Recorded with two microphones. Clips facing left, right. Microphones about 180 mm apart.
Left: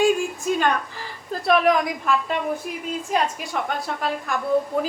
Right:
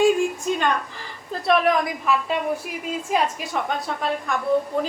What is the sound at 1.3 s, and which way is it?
A woman's voice, centre (ahead or behind).